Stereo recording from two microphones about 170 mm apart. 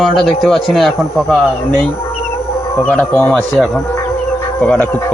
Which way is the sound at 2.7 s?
10° left (ahead or behind).